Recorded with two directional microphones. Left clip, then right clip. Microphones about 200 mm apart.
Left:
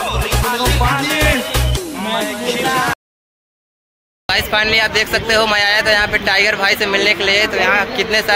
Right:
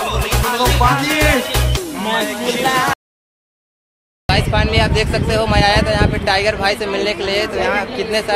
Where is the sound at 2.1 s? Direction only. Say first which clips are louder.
Right 1 dB; centre (ahead or behind).